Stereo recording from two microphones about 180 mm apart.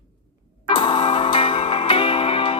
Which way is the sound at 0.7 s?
25° left (ahead or behind).